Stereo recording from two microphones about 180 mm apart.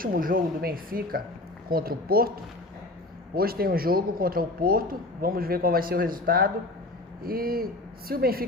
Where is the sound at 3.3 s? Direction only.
55° right (ahead or behind).